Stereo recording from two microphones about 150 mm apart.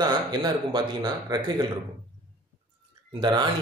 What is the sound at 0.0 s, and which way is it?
Speech, 30° right (ahead or behind).